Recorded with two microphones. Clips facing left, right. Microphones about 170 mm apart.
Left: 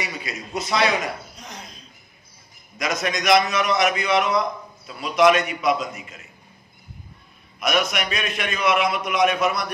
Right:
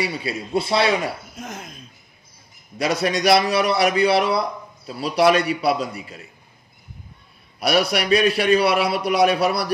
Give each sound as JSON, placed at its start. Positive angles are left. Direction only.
{"t": 0.0, "sound": "a man's voice", "side_deg": -30}
{"t": 1.3, "sound": "cricket", "side_deg": -50}
{"t": 2.8, "sound": "a man's voice", "side_deg": -35}
{"t": 7.6, "sound": "a man's voice", "side_deg": -35}